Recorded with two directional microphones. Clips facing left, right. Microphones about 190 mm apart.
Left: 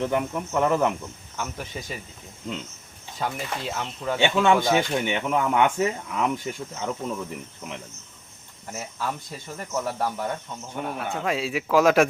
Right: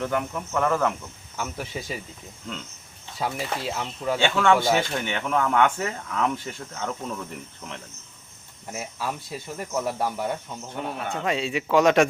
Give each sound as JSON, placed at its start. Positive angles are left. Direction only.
{"t": 0.0, "sound": "speech", "side_deg": 20}
{"t": 1.4, "sound": "speech", "side_deg": -5}
{"t": 3.2, "sound": "speech", "side_deg": -5}
{"t": 4.2, "sound": "speech", "side_deg": 20}
{"t": 8.7, "sound": "speech", "side_deg": -10}
{"t": 10.9, "sound": "speech", "side_deg": 0}